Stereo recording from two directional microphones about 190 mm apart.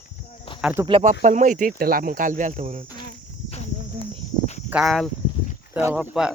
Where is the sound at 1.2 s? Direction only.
40° right (ahead or behind).